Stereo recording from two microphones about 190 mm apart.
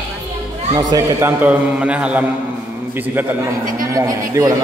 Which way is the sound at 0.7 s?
20° right (ahead or behind).